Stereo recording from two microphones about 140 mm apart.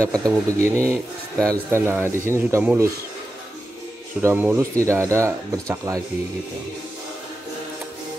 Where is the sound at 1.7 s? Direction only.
15° right (ahead or behind).